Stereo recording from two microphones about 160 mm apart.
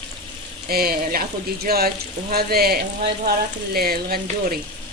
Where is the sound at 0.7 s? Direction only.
70° right (ahead or behind).